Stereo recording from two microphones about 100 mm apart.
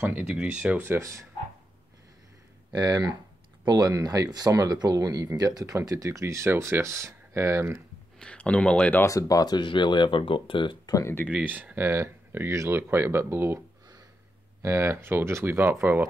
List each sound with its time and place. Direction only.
0.0 s speech: 15° right (ahead or behind)
0.8 s speech: 30° right (ahead or behind)
2.7 s speech: 45° right (ahead or behind); by 7.8 s 25° right (ahead or behind)
8.2 s speech: 10° left (ahead or behind)
9.0 s speech: 35° left (ahead or behind); by 10.8 s 55° left (ahead or behind)
10.9 s speech: 35° left (ahead or behind)
11.2 s speech: 15° right (ahead or behind)
14.6 s speech: 30° right (ahead or behind)